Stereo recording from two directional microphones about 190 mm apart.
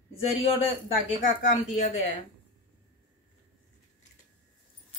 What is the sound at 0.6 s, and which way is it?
Speech, 35° left (ahead or behind).